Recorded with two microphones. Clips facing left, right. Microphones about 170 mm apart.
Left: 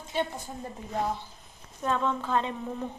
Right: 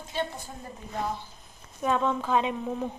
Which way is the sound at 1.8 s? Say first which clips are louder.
Right 2 dB; 15° right (ahead or behind).